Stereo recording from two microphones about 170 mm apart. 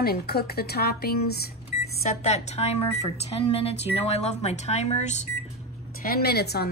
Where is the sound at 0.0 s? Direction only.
65° left (ahead or behind).